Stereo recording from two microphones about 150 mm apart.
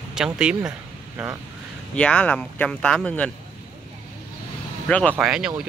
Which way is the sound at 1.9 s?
10° left (ahead or behind).